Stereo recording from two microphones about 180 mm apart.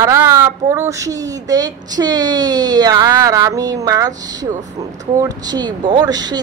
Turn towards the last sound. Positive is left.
turn(degrees=-20)  # may be behind; listen again after turning